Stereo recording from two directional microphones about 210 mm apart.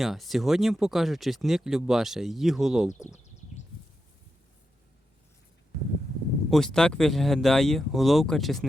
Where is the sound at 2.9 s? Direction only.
35° left (ahead or behind).